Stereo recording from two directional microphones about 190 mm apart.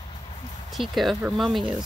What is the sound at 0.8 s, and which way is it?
Speech, centre (ahead or behind).